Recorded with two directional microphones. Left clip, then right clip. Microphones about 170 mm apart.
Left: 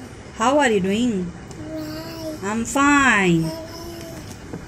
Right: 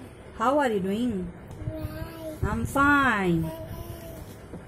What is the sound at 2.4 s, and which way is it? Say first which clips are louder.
Speech: left 4 dB; 15° right (ahead or behind).